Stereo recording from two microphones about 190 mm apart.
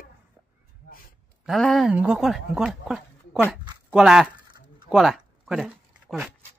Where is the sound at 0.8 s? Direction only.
50° left (ahead or behind).